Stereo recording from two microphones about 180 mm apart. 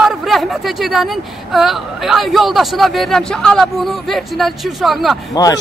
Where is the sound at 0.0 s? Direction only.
Centre (ahead or behind).